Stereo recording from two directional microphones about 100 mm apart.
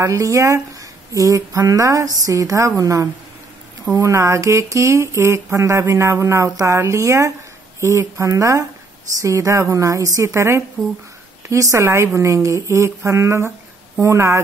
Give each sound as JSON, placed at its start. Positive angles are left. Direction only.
{"t": 0.0, "sound": "speech", "side_deg": -30}